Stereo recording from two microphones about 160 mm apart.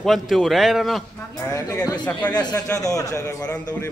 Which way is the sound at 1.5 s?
20° left (ahead or behind).